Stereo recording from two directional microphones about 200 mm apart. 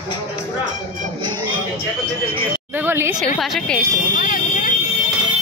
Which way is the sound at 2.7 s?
10° right (ahead or behind).